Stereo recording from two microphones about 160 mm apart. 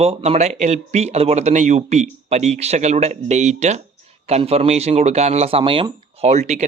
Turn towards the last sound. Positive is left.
turn(degrees=-45)  # may be behind; listen again after turning